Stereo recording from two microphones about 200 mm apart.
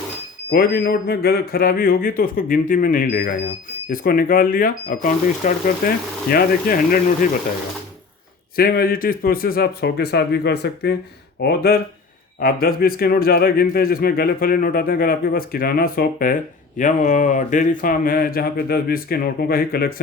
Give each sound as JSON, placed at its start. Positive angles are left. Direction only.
{"t": 0.5, "sound": "speech", "side_deg": 50}
{"t": 8.5, "sound": "speech", "side_deg": 50}